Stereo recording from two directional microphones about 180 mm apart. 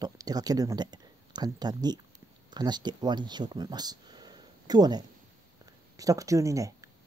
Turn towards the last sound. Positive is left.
turn(degrees=-15)  # may be behind; listen again after turning